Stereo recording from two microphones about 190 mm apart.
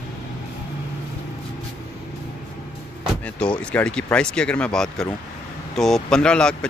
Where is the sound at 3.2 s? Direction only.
5° left (ahead or behind).